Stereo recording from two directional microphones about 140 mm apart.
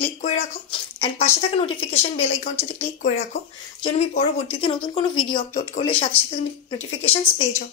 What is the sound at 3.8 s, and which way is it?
Speech, 50° left (ahead or behind).